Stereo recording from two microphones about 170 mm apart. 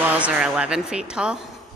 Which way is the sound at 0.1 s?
5° right (ahead or behind).